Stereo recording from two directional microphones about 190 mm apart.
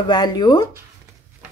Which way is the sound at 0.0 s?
20° left (ahead or behind).